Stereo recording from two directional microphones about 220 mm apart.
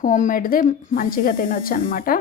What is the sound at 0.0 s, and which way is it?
A woman's voice, 35° left (ahead or behind).